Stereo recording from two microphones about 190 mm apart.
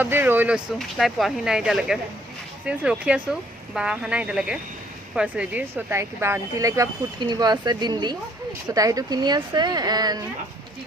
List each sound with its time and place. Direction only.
0.0 s speech: 10° right (ahead or behind)